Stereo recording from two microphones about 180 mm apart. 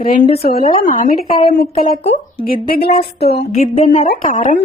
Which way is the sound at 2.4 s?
55° left (ahead or behind).